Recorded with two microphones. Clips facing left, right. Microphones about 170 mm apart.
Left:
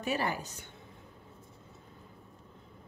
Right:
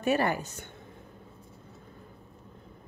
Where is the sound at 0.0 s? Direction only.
55° right (ahead or behind).